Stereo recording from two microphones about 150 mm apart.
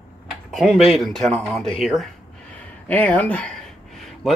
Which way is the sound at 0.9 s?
Centre (ahead or behind).